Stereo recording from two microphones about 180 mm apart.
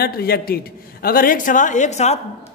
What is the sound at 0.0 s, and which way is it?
A man's voice, 60° left (ahead or behind).